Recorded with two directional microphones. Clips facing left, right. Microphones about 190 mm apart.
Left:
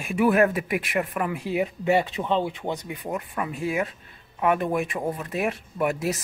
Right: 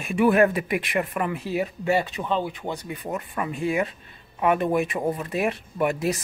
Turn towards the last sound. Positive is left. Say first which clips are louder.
# right 1 dB
turn(degrees=5)  # may be behind; listen again after turning